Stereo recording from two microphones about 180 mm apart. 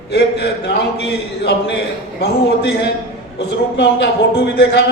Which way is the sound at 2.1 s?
65° left (ahead or behind).